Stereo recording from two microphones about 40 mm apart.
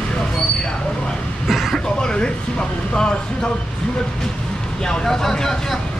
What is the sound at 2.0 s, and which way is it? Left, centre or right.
Speech, centre.